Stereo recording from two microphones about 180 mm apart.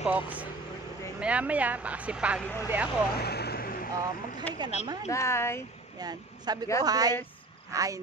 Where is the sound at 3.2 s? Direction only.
65° left (ahead or behind).